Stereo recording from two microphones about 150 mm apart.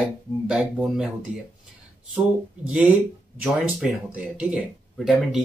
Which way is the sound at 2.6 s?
5° right (ahead or behind).